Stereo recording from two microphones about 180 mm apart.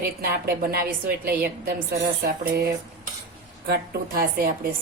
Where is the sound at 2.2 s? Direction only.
60° right (ahead or behind).